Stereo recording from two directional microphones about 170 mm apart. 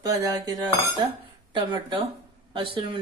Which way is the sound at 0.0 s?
20° right (ahead or behind).